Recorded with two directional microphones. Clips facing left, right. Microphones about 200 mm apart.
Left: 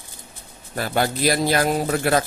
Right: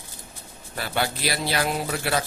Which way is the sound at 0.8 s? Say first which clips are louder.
Left 5 dB; 45° left (ahead or behind).